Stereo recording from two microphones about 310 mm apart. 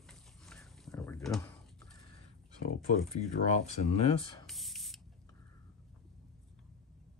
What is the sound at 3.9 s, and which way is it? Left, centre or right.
Speech, centre.